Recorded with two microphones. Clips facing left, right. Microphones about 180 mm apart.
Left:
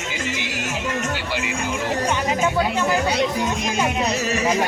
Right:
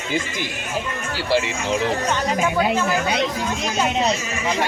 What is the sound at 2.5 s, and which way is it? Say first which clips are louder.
Speech: right 2 dB; 20° right (ahead or behind).